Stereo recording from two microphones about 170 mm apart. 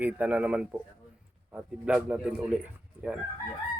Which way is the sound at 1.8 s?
5° right (ahead or behind).